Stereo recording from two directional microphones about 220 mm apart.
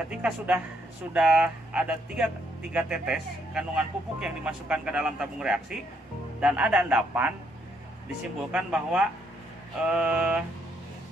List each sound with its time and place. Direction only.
0.1 s a man's voice: 5° right (ahead or behind)
8.5 s speech: 5° right (ahead or behind)